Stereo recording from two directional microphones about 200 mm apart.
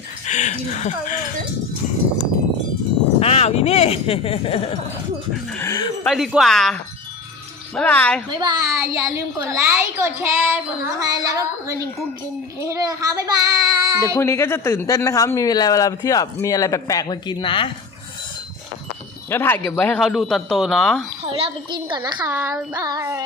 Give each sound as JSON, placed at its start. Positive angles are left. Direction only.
{"t": 0.3, "sound": "a sound", "side_deg": 35}
{"t": 3.2, "sound": "speech", "side_deg": 30}
{"t": 5.5, "sound": "dog", "side_deg": 10}
{"t": 6.1, "sound": "a man's voice", "side_deg": 0}
{"t": 7.8, "sound": "speech", "side_deg": 10}
{"t": 8.3, "sound": "a child's voice", "side_deg": -20}
{"t": 12.5, "sound": "child singing", "side_deg": -15}
{"t": 14.0, "sound": "speech", "side_deg": 15}
{"t": 19.3, "sound": "a man's voice", "side_deg": 10}
{"t": 21.2, "sound": "a child's voice", "side_deg": -25}
{"t": 22.3, "sound": "a woman's voice", "side_deg": -10}